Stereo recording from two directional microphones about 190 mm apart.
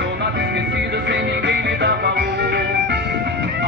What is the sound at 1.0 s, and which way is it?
Music, 60° right (ahead or behind).